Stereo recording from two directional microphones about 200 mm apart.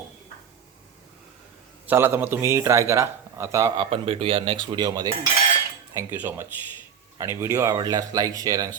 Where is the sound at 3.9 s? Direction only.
30° right (ahead or behind).